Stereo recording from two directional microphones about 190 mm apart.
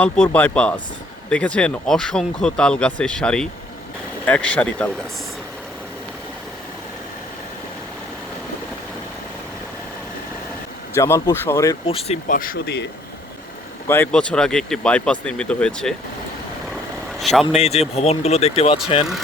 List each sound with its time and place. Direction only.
0.0 s speech: 10° left (ahead or behind)
10.9 s speech: 15° left (ahead or behind)
11.9 s speech: 30° left (ahead or behind)
12.4 s speech: 55° left (ahead or behind)
13.8 s speech: 10° left (ahead or behind)
17.2 s speech: centre (ahead or behind)
17.6 s speech: 35° left (ahead or behind)